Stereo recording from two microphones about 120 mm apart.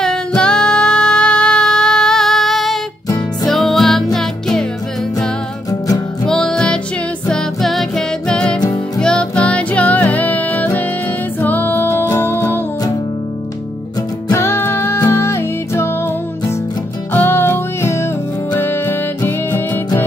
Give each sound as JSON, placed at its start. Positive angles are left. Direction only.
{"t": 0.0, "sound": "female singing", "side_deg": 5}
{"t": 3.4, "sound": "music", "side_deg": 0}
{"t": 5.7, "sound": "music", "side_deg": 30}
{"t": 6.2, "sound": "music", "side_deg": 5}
{"t": 8.5, "sound": "music", "side_deg": 30}
{"t": 9.0, "sound": "music", "side_deg": 10}
{"t": 14.3, "sound": "music", "side_deg": 20}
{"t": 17.1, "sound": "music", "side_deg": 20}